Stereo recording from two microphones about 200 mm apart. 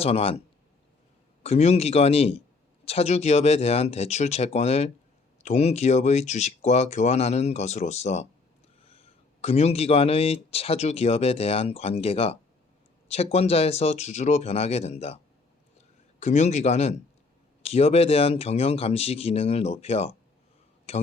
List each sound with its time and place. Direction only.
0.0 s speech: 30° left (ahead or behind)
1.5 s speech: 30° left (ahead or behind)
16.2 s speech: 35° left (ahead or behind)